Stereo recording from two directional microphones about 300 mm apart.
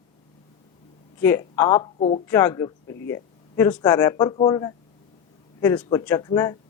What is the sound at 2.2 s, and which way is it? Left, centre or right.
Speech, centre.